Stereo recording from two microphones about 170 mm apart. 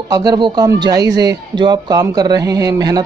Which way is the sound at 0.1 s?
25° right (ahead or behind).